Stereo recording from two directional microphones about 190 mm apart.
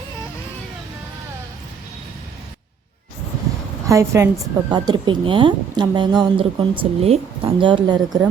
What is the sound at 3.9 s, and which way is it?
A woman's voice, 15° right (ahead or behind).